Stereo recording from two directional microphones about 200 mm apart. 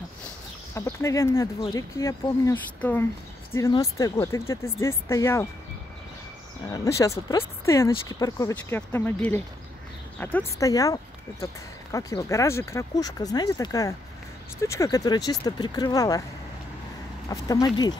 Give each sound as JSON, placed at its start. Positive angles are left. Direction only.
{"t": 0.7, "sound": "speech", "side_deg": 15}
{"t": 6.7, "sound": "speech", "side_deg": 15}
{"t": 17.3, "sound": "speech", "side_deg": 15}